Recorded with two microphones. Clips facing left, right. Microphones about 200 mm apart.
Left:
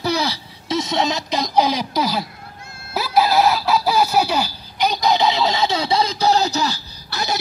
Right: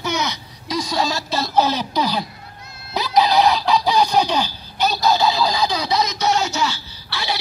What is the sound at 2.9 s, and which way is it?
Fowl, 5° left (ahead or behind).